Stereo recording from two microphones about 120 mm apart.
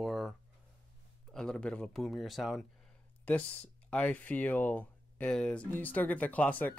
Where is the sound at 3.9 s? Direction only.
10° left (ahead or behind).